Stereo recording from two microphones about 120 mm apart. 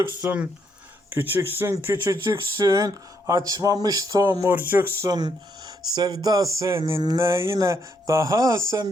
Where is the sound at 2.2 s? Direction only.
30° right (ahead or behind).